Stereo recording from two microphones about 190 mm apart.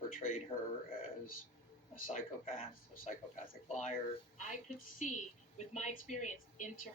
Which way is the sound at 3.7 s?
40° left (ahead or behind).